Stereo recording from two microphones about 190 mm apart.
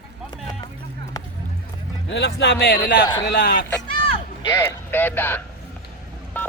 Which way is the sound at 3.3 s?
45° left (ahead or behind).